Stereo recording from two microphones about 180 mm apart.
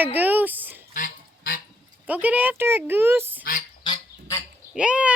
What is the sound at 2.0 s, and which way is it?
Speech, 10° right (ahead or behind).